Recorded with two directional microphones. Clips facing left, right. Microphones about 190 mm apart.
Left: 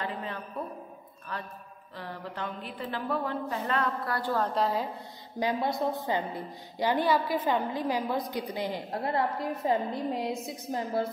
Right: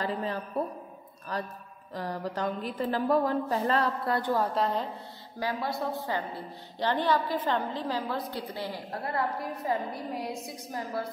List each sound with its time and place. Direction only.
0.0 s a man's voice: 40° right (ahead or behind)
4.6 s a woman's voice: 5° left (ahead or behind)
5.4 s a woman's voice: 20° left (ahead or behind)